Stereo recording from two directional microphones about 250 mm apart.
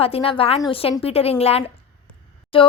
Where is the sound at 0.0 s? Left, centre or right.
Left.